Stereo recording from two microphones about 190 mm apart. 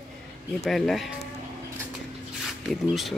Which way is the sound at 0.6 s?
Centre (ahead or behind).